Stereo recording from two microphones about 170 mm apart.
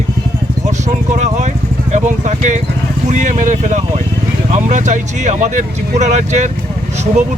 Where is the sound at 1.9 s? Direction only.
45° right (ahead or behind).